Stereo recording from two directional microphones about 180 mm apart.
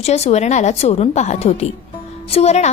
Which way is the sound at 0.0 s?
35° left (ahead or behind).